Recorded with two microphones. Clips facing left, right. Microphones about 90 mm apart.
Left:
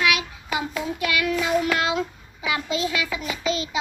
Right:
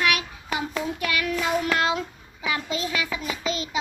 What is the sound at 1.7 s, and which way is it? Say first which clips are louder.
Child singing: left 1 dB; 40° right (ahead or behind).